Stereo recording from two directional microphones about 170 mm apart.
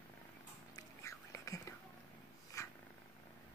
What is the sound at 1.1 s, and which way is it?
Whispering, 20° left (ahead or behind).